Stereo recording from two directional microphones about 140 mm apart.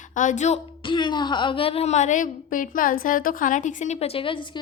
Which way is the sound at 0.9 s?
35° left (ahead or behind).